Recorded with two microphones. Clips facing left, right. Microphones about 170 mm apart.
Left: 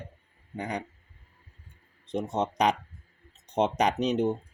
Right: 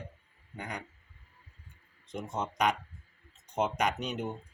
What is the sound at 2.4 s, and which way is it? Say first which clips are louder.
Speech: left 2 dB; 35° left (ahead or behind).